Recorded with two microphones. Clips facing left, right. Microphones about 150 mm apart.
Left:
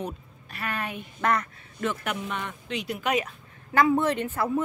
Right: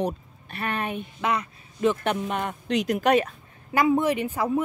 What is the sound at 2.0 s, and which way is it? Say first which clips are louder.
Speech: right 5 dB; 35° right (ahead or behind).